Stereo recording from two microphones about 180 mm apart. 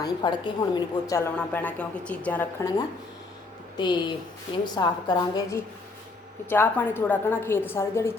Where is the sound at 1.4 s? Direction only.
5° left (ahead or behind).